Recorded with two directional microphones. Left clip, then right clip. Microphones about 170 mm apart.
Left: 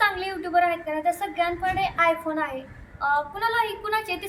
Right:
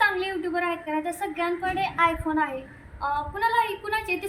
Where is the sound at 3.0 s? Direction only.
10° left (ahead or behind).